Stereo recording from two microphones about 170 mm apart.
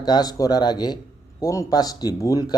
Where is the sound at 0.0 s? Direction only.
25° left (ahead or behind).